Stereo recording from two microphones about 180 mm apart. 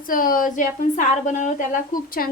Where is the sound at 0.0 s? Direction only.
50° left (ahead or behind).